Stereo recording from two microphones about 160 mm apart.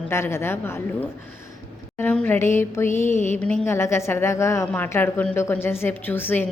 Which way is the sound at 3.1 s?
50° left (ahead or behind).